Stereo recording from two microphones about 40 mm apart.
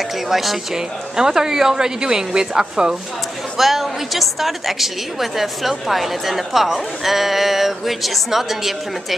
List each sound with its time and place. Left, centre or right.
0.3 s a woman's voice: centre
0.7 s a woman's voice: centre
3.5 s a woman's voice: centre